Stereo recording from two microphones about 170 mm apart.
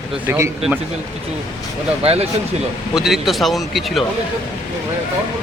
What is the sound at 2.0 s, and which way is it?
Speech, 35° right (ahead or behind).